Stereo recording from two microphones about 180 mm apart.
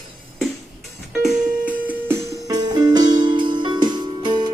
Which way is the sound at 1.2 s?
5° right (ahead or behind).